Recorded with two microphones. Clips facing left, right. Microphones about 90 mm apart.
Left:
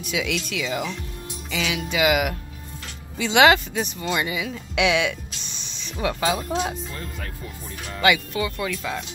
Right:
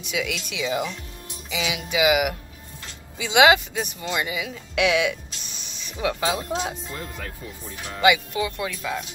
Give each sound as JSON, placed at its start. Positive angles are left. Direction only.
{"t": 0.1, "sound": "speech", "side_deg": -5}
{"t": 0.5, "sound": "music", "side_deg": -20}
{"t": 4.0, "sound": "speech", "side_deg": 0}
{"t": 8.0, "sound": "speech", "side_deg": -10}